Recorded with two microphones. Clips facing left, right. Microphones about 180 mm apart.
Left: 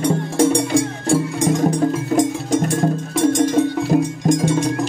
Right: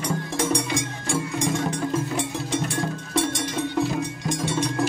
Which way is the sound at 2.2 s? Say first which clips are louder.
Left 9 dB; 45° left (ahead or behind).